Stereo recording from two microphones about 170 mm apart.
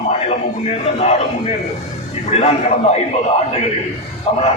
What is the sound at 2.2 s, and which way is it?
Speech, 40° left (ahead or behind).